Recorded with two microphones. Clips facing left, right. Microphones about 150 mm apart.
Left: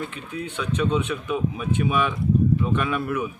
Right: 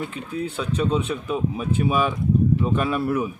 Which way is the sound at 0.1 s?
35° right (ahead or behind).